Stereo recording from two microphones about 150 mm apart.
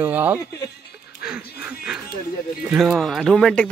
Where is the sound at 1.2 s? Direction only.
5° right (ahead or behind).